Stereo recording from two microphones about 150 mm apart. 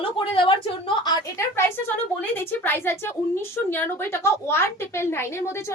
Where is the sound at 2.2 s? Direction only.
15° left (ahead or behind).